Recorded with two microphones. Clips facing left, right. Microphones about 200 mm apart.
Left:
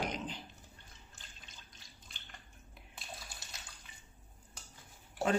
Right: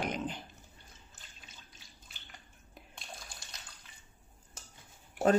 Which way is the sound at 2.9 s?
5° left (ahead or behind).